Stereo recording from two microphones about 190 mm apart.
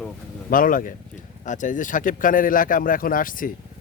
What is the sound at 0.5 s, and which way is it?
Speech, 45° left (ahead or behind).